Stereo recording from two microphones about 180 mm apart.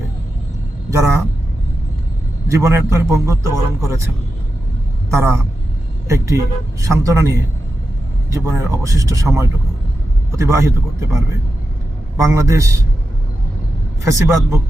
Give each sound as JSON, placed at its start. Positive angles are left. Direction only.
{"t": 0.9, "sound": "a sound", "side_deg": -15}
{"t": 2.5, "sound": "a man's voice", "side_deg": -15}
{"t": 5.1, "sound": "a man's voice", "side_deg": -15}
{"t": 14.0, "sound": "a man's voice", "side_deg": -15}